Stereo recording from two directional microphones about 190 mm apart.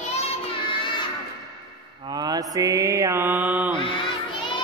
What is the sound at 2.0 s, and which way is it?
Mantra, 20° right (ahead or behind).